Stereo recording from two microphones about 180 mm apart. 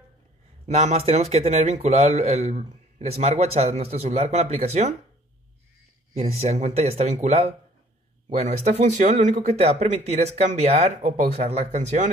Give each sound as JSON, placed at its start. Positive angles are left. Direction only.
{"t": 0.7, "sound": "speech", "side_deg": -40}
{"t": 6.1, "sound": "speech", "side_deg": -35}